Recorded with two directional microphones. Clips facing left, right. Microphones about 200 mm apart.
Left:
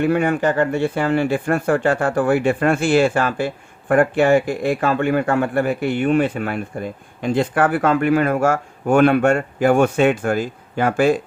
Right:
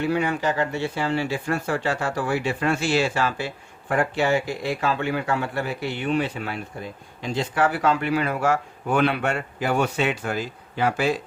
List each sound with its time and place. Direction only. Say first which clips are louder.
0.0 s speech: left 6 dB; 55° left (ahead or behind)